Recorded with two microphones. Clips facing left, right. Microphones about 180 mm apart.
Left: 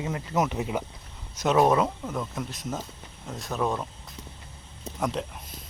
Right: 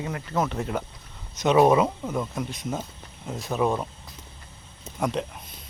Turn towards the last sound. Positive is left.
turn(degrees=0)  # may be behind; listen again after turning